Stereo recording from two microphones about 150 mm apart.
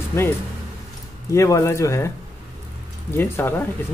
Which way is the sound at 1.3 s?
20° left (ahead or behind).